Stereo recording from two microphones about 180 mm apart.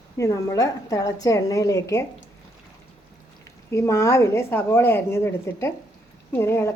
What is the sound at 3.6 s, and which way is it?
A woman's voice, 15° left (ahead or behind).